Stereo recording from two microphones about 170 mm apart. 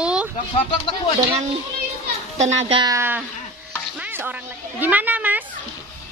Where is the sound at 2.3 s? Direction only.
40° right (ahead or behind).